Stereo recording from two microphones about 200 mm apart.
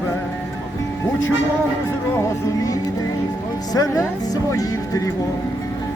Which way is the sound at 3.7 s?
15° left (ahead or behind).